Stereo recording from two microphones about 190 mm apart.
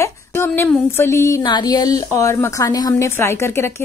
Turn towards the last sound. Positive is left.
turn(degrees=15)  # may be behind; listen again after turning